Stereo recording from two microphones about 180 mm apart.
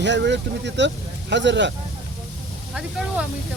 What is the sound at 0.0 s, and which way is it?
Speech, 80° right.